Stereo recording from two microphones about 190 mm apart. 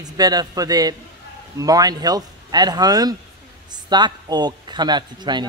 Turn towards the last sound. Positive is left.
turn(degrees=-25)  # may be behind; listen again after turning